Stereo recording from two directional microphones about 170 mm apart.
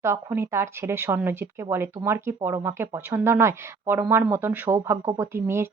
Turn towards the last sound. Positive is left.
turn(degrees=-15)  # may be behind; listen again after turning